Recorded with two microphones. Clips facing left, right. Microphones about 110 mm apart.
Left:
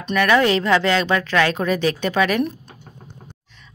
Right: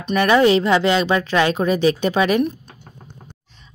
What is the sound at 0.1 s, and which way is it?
Speech, 20° right (ahead or behind).